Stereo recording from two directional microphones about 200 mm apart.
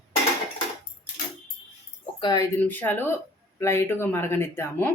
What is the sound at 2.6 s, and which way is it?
Speech, 10° left (ahead or behind).